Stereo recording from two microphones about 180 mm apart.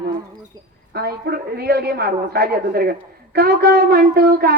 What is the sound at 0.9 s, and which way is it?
Speech, 60° right (ahead or behind).